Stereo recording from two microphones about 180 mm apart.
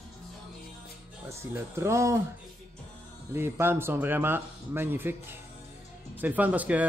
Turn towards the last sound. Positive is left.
turn(degrees=-10)  # may be behind; listen again after turning